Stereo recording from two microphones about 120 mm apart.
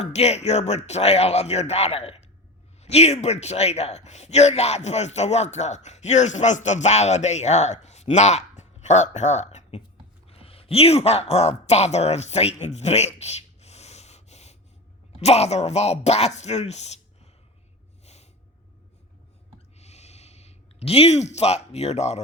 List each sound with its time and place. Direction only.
0.0 s speech: 65° left (ahead or behind)
10.2 s speech: 55° left (ahead or behind)
18.0 s snort: 65° left (ahead or behind)
19.8 s a sound: 65° left (ahead or behind)